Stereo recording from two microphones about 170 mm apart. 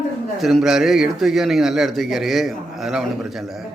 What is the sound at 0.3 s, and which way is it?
A man's voice, centre (ahead or behind).